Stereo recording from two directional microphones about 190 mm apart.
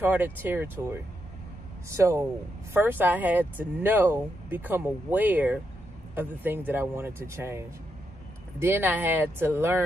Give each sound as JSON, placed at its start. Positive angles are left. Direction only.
{"t": 0.0, "sound": "speech", "side_deg": -10}